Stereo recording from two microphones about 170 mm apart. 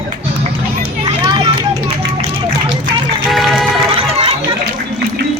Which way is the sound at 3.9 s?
35° right (ahead or behind).